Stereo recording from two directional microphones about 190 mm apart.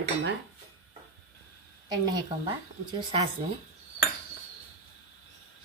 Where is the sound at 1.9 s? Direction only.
20° right (ahead or behind).